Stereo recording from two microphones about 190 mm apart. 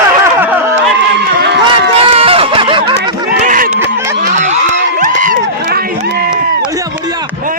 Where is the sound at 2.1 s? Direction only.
30° right (ahead or behind).